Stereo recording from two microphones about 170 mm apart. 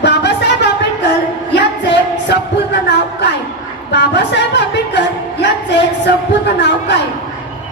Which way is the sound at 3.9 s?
90° left.